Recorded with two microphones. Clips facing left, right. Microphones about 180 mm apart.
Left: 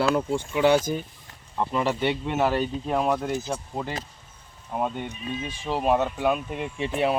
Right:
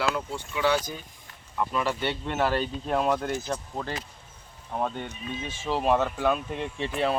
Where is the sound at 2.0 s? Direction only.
15° left (ahead or behind).